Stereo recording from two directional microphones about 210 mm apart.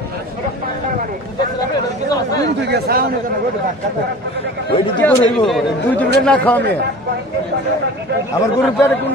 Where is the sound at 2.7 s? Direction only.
45° right (ahead or behind).